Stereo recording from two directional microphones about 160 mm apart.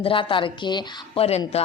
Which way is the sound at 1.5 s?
40° left (ahead or behind).